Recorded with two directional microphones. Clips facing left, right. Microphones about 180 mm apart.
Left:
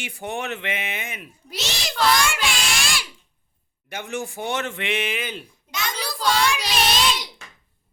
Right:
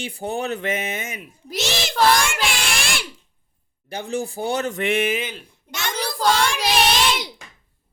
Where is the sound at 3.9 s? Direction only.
35° right (ahead or behind).